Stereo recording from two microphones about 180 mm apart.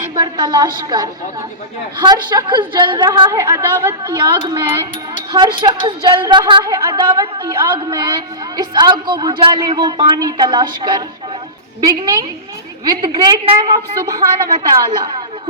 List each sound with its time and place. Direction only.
0.2 s a woman's voice: 25° right (ahead or behind)